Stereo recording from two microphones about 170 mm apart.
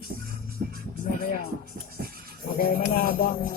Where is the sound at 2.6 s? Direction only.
60° left (ahead or behind).